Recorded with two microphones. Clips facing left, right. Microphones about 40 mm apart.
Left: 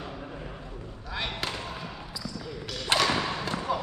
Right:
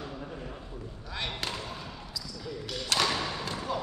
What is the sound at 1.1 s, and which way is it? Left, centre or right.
Basketball bounce, centre.